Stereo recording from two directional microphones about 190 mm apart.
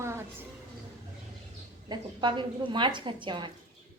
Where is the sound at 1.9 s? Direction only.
25° right (ahead or behind).